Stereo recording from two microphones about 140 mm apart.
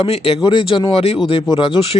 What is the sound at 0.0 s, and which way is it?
Speech, 45° left (ahead or behind).